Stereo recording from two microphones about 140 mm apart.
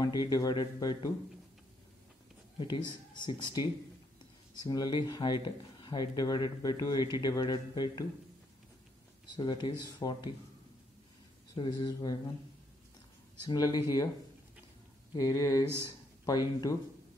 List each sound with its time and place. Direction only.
0.0 s speech: 30° left (ahead or behind)
2.6 s speech: 35° left (ahead or behind)
4.6 s speech: 30° left (ahead or behind)
9.3 s speech: 30° left (ahead or behind)
11.5 s speech: 35° left (ahead or behind)
13.5 s speech: 30° left (ahead or behind)
15.1 s speech: 25° left (ahead or behind)